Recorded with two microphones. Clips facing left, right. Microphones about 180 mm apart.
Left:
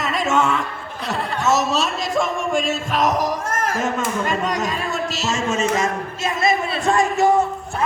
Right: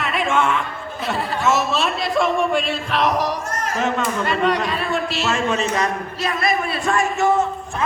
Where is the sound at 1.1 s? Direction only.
Centre (ahead or behind).